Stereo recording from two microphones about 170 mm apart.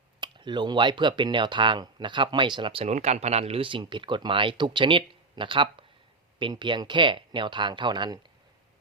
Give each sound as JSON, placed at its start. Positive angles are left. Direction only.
{"t": 0.2, "sound": "speech", "side_deg": -25}